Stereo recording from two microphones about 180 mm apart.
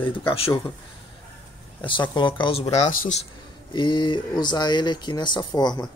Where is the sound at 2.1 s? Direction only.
25° left (ahead or behind).